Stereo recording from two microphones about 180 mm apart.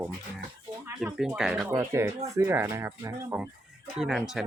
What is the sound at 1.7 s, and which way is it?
Speech, 15° right (ahead or behind).